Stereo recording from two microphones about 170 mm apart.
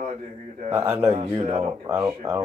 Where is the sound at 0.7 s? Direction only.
15° right (ahead or behind).